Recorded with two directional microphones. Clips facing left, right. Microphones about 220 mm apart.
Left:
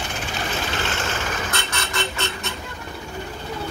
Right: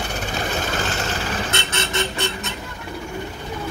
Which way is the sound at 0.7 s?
35° right (ahead or behind).